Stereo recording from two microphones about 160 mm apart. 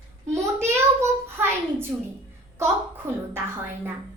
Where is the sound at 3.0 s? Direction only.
15° right (ahead or behind).